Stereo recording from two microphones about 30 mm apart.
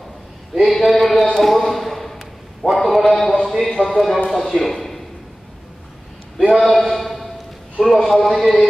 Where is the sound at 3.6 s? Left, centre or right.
Centre.